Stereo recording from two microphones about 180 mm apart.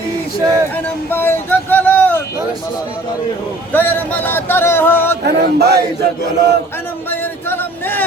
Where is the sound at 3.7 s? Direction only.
10° left (ahead or behind).